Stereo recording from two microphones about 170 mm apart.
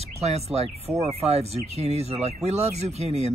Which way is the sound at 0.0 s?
40° right (ahead or behind).